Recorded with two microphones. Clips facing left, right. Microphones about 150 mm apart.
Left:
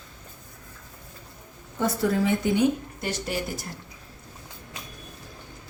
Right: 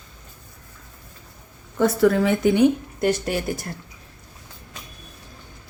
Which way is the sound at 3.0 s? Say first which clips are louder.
Right 9 dB; 60° right (ahead or behind).